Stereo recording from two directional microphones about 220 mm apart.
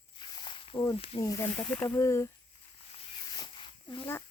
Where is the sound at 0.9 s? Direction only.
25° left (ahead or behind).